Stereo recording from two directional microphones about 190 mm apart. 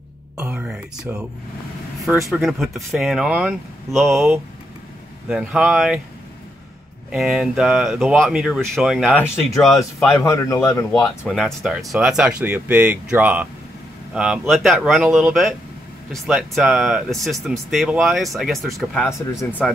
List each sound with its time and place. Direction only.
0.4 s a sound: 5° right (ahead or behind)
2.2 s speech: centre (ahead or behind)
7.1 s speech: centre (ahead or behind)
10.2 s a man's voice: 15° left (ahead or behind)
11.1 s speech: centre (ahead or behind)